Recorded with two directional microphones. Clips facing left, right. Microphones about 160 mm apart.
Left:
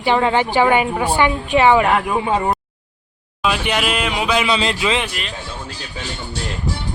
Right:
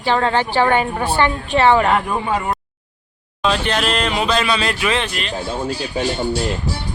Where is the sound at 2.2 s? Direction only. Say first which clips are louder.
Left 2 dB; 25° left (ahead or behind).